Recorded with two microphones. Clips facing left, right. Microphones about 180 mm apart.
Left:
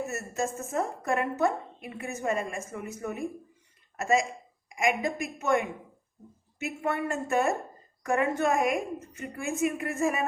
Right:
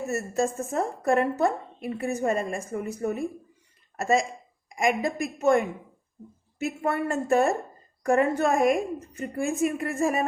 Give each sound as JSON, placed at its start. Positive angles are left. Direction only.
{"t": 0.1, "sound": "a woman's voice", "side_deg": -35}